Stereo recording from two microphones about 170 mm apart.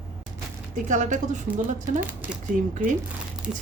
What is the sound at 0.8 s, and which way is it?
Speech, 45° right (ahead or behind).